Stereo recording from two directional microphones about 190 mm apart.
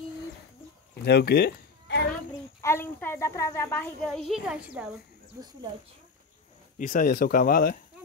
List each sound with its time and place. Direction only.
1.0 s a sound: 60° left (ahead or behind)
2.6 s a child's voice: 10° left (ahead or behind); by 4.8 s 5° right (ahead or behind)
6.8 s speech: 45° left (ahead or behind)